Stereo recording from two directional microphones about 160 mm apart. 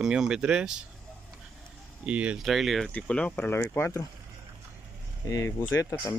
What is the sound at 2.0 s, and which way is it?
Speech, 10° right (ahead or behind).